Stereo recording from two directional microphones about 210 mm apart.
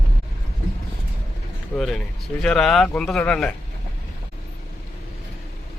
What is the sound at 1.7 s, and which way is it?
Speech, centre (ahead or behind).